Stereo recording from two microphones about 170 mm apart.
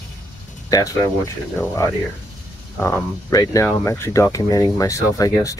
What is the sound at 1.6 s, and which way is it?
Speech, 20° left (ahead or behind).